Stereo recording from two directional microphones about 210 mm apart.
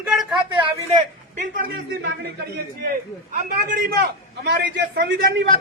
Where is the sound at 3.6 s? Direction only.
40° right (ahead or behind).